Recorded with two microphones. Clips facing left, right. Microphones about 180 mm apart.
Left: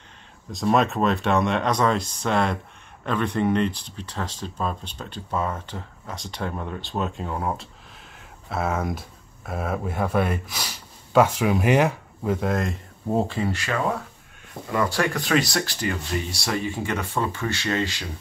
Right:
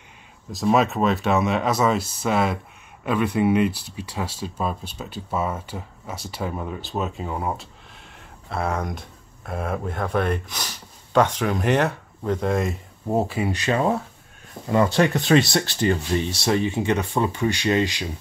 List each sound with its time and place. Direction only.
0.5 s speech: centre (ahead or behind)
13.1 s speech: 15° right (ahead or behind)
13.6 s speech: 25° right (ahead or behind)